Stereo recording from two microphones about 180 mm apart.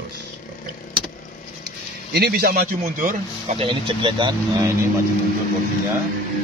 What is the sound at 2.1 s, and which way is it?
Speech, 60° right (ahead or behind).